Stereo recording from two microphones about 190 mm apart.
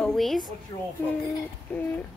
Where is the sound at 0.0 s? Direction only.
Centre (ahead or behind).